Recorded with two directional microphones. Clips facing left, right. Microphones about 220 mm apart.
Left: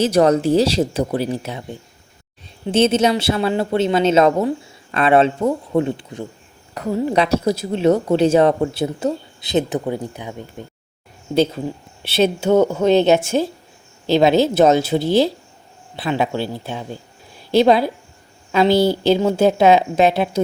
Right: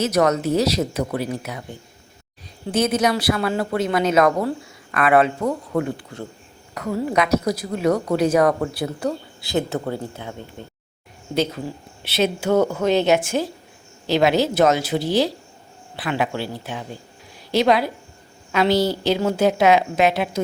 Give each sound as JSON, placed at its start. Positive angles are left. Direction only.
{"t": 0.0, "sound": "a woman's voice", "side_deg": 30}
{"t": 12.0, "sound": "a woman's voice", "side_deg": 30}